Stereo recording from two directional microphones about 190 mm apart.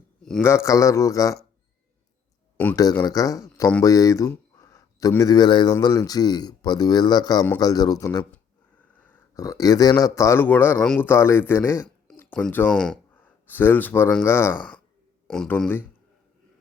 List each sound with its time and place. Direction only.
0.2 s a sound: centre (ahead or behind)
0.4 s speech: 15° left (ahead or behind)
2.7 s a man's voice: 20° left (ahead or behind)